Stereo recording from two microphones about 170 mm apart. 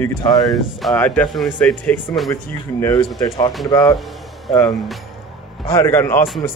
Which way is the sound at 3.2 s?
25° left (ahead or behind).